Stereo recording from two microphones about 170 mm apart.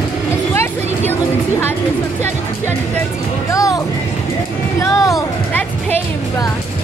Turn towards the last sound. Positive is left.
turn(degrees=20)  # may be behind; listen again after turning